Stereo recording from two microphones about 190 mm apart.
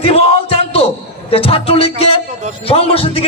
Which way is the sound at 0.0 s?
30° left (ahead or behind).